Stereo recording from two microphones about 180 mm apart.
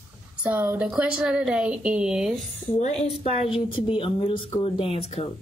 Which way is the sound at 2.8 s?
30° left (ahead or behind).